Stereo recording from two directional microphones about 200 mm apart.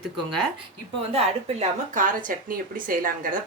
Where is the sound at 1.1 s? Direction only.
35° right (ahead or behind).